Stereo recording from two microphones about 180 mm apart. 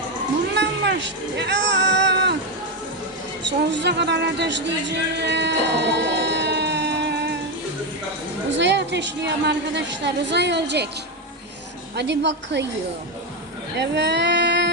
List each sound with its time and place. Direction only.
0.5 s music: 75° right (ahead or behind)
3.7 s speech: 75° right (ahead or behind)
8.5 s a woman's voice: 75° right (ahead or behind)
11.9 s a woman's voice: 75° right (ahead or behind)
13.7 s a sound: 70° right (ahead or behind)